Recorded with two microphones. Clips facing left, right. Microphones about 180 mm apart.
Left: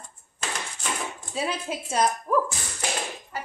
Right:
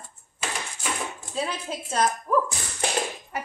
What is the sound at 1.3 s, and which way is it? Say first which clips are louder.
Speech: left 1 dB; 10° left (ahead or behind).